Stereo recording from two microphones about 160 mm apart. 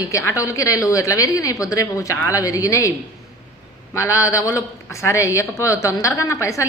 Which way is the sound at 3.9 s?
20° left (ahead or behind).